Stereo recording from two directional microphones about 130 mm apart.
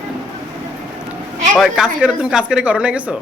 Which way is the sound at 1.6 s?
5° right (ahead or behind).